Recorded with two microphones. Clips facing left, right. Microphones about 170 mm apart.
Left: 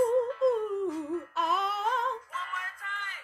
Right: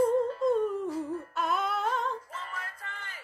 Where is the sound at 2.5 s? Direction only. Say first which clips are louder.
Even; 35° right (ahead or behind).